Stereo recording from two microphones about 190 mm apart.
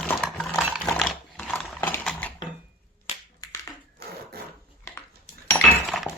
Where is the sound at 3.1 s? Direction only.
30° left (ahead or behind).